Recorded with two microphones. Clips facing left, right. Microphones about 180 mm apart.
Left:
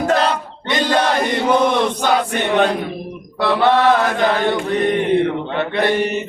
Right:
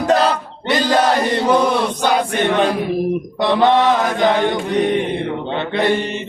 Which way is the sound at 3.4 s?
15° right (ahead or behind).